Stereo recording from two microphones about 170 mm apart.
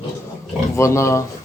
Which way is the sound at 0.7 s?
15° left (ahead or behind).